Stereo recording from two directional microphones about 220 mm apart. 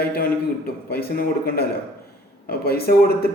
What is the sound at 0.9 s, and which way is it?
A man's voice, 45° left (ahead or behind).